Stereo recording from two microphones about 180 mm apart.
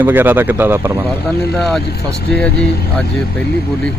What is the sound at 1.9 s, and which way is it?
Speech, 65° left (ahead or behind).